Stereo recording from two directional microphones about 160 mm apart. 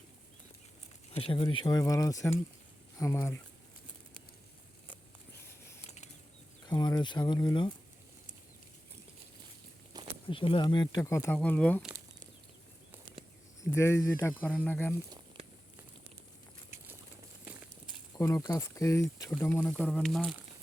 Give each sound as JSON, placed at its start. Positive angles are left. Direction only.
{"t": 1.1, "sound": "speech", "side_deg": 35}
{"t": 6.7, "sound": "speech", "side_deg": 25}
{"t": 10.2, "sound": "speech", "side_deg": 35}
{"t": 11.0, "sound": "speech", "side_deg": 15}
{"t": 13.7, "sound": "speech", "side_deg": 15}
{"t": 18.1, "sound": "speech", "side_deg": 20}
{"t": 19.7, "sound": "speech", "side_deg": 5}